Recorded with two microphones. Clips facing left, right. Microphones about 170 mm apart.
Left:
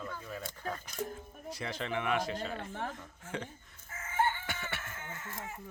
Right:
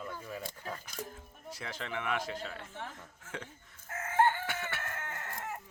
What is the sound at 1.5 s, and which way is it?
Speech, 5° right (ahead or behind).